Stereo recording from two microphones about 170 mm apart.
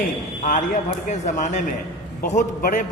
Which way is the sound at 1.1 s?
45° left (ahead or behind).